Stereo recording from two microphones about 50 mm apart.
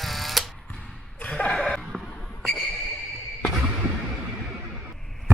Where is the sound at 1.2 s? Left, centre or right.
Left.